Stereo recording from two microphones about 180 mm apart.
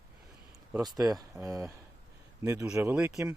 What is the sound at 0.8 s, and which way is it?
Speech, 20° right (ahead or behind).